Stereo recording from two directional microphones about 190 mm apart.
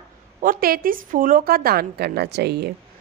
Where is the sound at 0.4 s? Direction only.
50° right (ahead or behind).